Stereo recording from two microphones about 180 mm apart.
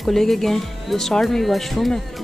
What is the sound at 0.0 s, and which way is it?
Speech, centre (ahead or behind).